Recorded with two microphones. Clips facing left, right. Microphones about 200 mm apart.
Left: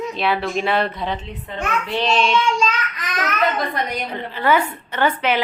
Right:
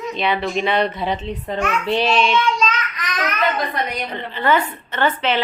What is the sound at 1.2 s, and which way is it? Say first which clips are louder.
Speech: right 4 dB; 35° right (ahead or behind).